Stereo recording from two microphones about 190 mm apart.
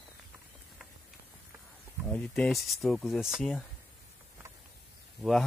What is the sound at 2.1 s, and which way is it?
Speech, 5° left (ahead or behind).